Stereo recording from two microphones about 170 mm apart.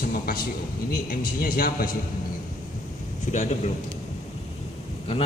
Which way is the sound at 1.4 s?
60° left (ahead or behind).